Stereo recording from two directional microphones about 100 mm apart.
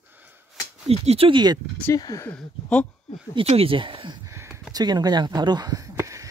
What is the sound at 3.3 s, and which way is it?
Speech, 70° right (ahead or behind).